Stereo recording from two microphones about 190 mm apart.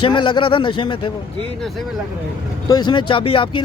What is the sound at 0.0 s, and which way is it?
Speech, 25° left (ahead or behind).